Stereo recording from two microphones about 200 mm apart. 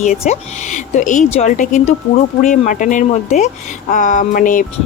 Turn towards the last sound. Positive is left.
turn(degrees=45)  # may be behind; listen again after turning